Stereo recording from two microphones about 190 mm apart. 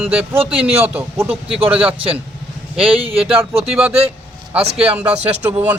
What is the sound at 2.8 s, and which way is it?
Speech, 30° right (ahead or behind).